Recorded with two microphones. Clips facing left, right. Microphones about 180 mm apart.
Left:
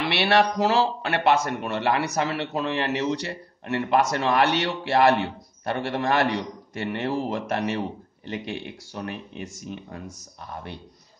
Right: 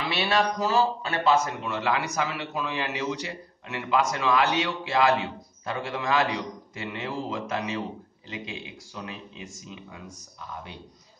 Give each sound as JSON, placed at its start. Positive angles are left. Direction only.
{"t": 0.0, "sound": "a man's voice", "side_deg": 70}